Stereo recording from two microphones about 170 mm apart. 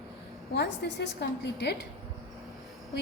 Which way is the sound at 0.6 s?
85° left.